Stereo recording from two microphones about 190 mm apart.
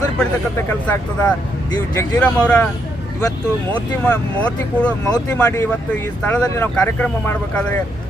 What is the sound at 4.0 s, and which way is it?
Speech, 10° left (ahead or behind).